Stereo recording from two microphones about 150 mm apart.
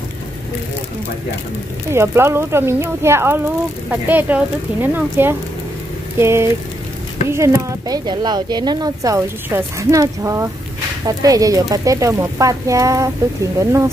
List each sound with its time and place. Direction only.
1.9 s speech: 15° right (ahead or behind)
8.1 s speech: 30° right (ahead or behind)